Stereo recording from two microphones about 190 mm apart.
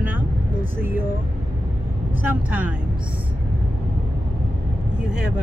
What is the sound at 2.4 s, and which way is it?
Speech, 10° right (ahead or behind).